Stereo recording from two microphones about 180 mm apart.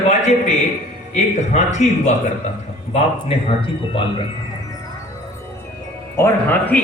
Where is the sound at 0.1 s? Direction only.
40° left (ahead or behind).